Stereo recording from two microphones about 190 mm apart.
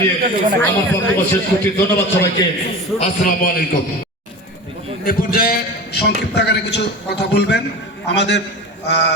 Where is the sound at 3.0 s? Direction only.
50° left (ahead or behind).